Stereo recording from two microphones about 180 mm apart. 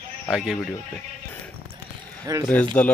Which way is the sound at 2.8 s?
15° left (ahead or behind).